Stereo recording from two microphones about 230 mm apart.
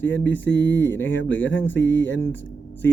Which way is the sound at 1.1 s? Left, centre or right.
Left.